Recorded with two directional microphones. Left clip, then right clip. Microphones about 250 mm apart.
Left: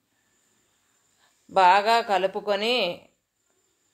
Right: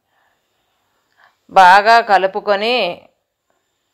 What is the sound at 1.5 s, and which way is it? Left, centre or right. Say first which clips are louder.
A woman's voice: right 10 dB; centre.